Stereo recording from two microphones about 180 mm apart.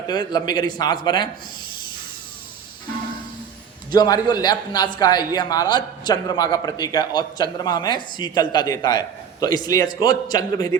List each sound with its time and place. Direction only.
0.1 s a man's voice: 25° left (ahead or behind)
3.9 s a man's voice: 20° left (ahead or behind)